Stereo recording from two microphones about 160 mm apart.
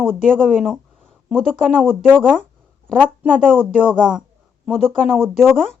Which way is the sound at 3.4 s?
10° right (ahead or behind).